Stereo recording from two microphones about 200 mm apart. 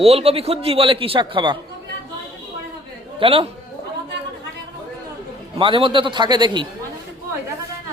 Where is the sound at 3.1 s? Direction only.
25° right (ahead or behind).